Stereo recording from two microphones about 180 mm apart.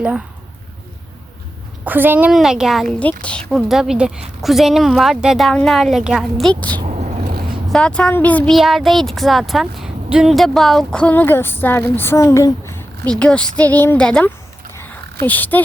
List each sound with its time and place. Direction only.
1.8 s a woman's voice: 10° right (ahead or behind); by 6.7 s 5° left (ahead or behind)
6.8 s a sound: 40° right (ahead or behind)
7.7 s a woman's voice: 5° left (ahead or behind)